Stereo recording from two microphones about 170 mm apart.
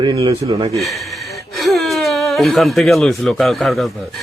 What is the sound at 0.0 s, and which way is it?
Speech, 25° right (ahead or behind).